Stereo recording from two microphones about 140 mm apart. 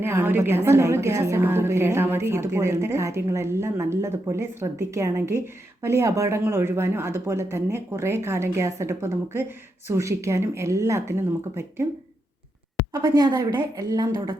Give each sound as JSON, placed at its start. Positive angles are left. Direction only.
{"t": 0.0, "sound": "a woman's voice", "side_deg": -15}
{"t": 12.9, "sound": "a woman's voice", "side_deg": -25}